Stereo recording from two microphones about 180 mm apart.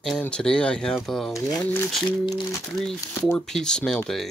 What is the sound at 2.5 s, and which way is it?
Speech, centre (ahead or behind).